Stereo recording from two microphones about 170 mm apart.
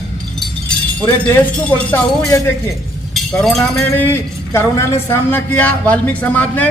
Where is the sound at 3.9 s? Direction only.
15° left (ahead or behind).